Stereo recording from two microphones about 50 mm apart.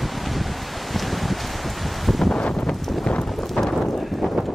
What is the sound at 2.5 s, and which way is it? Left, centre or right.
Wind noise, centre.